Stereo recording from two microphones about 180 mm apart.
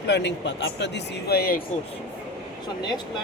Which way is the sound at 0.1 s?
75° left (ahead or behind).